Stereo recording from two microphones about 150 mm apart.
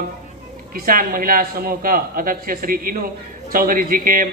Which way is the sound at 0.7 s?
70° right (ahead or behind).